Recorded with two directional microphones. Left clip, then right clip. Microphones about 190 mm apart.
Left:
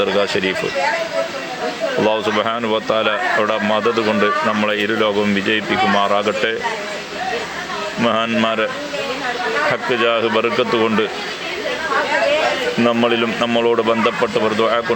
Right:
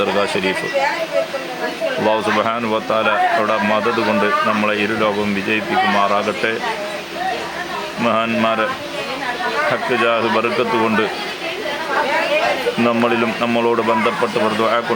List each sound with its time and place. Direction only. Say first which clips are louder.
0.0 s speech: even; 5° left (ahead or behind)
2.0 s speech: right 2 dB; 15° left (ahead or behind)
8.0 s speech: even; 15° left (ahead or behind)
9.9 s speech: even; 15° left (ahead or behind)
12.8 s speech: left 1 dB; 10° left (ahead or behind)